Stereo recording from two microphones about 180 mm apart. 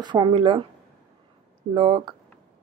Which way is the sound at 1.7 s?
30° right (ahead or behind).